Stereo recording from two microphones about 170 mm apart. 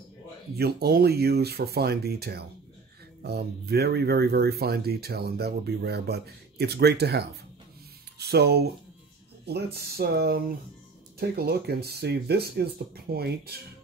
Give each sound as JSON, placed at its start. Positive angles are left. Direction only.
{"t": 0.6, "sound": "speech", "side_deg": -70}